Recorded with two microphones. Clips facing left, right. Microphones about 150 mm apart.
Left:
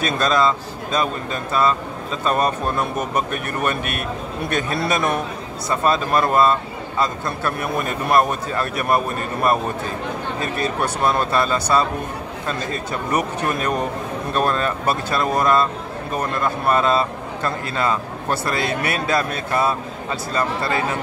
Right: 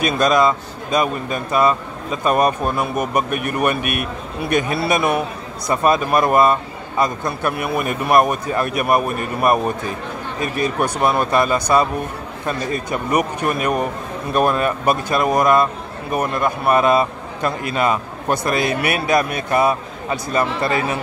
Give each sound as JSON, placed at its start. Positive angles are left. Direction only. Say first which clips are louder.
{"t": 0.0, "sound": "a man's voice", "louder": "right 3 dB", "side_deg": -15}